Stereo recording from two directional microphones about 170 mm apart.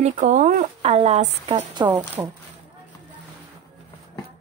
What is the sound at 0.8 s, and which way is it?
Speech, 35° right (ahead or behind).